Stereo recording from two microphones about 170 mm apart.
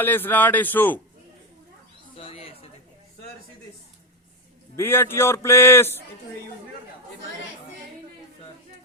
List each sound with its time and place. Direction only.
0.0 s a man's voice: 10° left (ahead or behind)
2.1 s chatter: 35° left (ahead or behind)
4.8 s a man's voice: 15° left (ahead or behind)